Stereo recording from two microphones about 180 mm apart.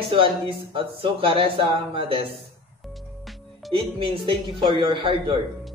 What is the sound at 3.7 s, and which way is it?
Speech, 30° right (ahead or behind).